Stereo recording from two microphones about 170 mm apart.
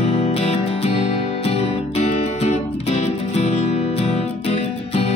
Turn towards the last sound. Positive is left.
turn(degrees=35)  # may be behind; listen again after turning